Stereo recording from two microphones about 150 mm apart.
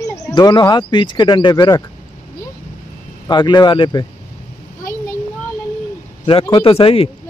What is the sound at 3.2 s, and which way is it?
Speech, 30° left (ahead or behind).